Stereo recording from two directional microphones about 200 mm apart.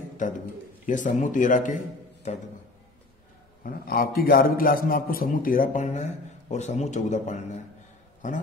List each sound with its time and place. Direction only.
0.2 s speech: 40° left (ahead or behind)
3.6 s a man's voice: 45° left (ahead or behind)